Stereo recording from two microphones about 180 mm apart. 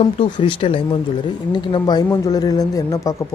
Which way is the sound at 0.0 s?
30° left (ahead or behind).